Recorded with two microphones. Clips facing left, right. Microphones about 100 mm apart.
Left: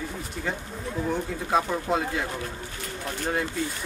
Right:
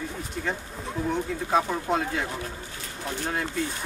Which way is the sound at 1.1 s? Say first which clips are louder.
Right 1 dB; centre (ahead or behind).